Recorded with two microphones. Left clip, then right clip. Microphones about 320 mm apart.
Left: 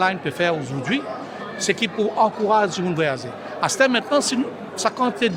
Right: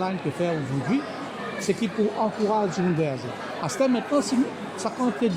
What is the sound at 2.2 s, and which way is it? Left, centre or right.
Speech, left.